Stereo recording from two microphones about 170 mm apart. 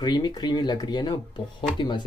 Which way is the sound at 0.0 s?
25° left (ahead or behind).